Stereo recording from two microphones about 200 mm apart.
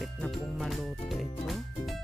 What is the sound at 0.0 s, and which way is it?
Music, centre (ahead or behind).